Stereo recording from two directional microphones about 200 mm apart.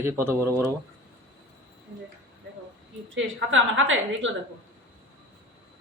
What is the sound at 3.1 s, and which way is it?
Speech, 70° right (ahead or behind).